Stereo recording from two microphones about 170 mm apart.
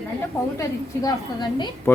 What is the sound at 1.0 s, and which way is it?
Speech, 25° left (ahead or behind).